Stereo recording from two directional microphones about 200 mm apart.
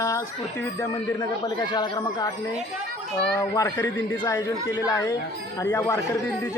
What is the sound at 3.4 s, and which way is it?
Speech, 15° left (ahead or behind).